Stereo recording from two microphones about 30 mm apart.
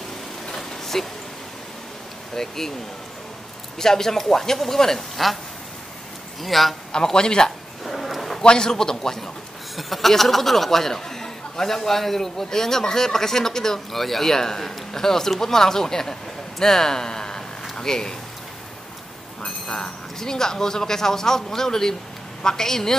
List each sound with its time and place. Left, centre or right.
0.9 s speech: centre
2.3 s speech: centre
3.7 s speech: centre
5.1 s speech: centre
6.4 s a man's voice: centre
6.9 s speech: left
7.8 s a sound: centre
8.4 s speech: left
9.8 s speech: centre
13.9 s speech: centre
20.2 s speech: centre